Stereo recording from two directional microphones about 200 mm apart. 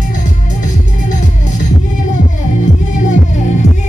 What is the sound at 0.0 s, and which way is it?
Music, 40° left (ahead or behind).